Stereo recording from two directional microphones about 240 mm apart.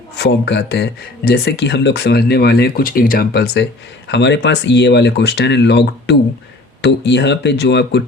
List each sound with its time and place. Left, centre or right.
0.2 s speech: left